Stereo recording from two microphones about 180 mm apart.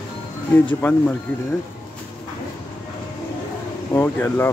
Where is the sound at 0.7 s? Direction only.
10° left (ahead or behind).